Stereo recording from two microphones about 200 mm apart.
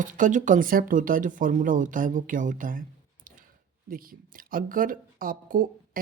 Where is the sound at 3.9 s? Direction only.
45° right (ahead or behind).